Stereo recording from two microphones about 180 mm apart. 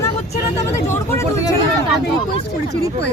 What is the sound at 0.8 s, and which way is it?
Speech, 15° left (ahead or behind).